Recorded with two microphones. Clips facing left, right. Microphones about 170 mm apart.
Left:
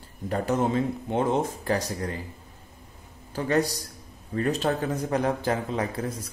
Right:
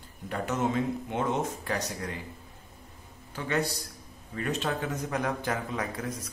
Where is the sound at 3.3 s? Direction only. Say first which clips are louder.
Left 5 dB; 40° left (ahead or behind).